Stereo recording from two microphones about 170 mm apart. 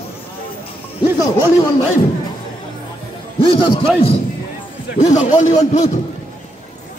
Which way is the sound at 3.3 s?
30° left (ahead or behind).